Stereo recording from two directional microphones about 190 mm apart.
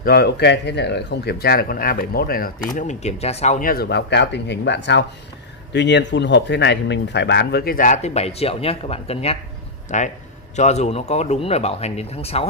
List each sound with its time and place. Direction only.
0.0 s a man's voice: 55° left (ahead or behind); by 12.4 s 30° left (ahead or behind)